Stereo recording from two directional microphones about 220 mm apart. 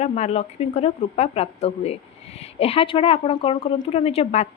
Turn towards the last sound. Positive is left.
turn(degrees=30)  # may be behind; listen again after turning